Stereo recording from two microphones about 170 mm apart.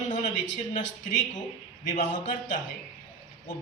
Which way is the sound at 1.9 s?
50° left (ahead or behind).